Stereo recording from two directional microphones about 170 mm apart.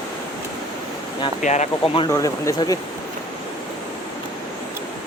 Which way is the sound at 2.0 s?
20° left (ahead or behind).